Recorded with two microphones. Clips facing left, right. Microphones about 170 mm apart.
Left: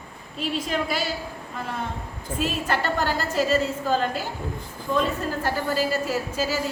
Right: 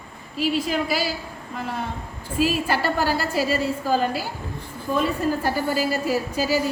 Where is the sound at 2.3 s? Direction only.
5° right (ahead or behind).